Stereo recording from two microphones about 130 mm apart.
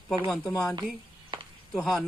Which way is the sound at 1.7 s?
Centre (ahead or behind).